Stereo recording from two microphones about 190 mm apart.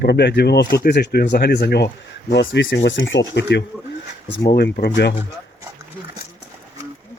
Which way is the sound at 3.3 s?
65° left (ahead or behind).